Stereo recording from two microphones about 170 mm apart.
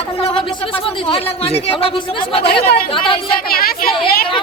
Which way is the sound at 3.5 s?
60° left (ahead or behind).